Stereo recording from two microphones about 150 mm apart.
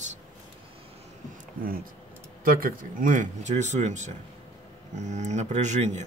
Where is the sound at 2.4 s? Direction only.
70° right (ahead or behind).